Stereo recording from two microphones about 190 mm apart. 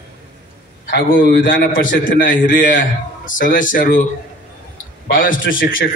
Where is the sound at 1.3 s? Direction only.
45° left (ahead or behind).